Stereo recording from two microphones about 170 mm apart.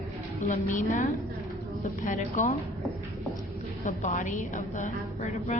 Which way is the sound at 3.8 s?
45° left (ahead or behind).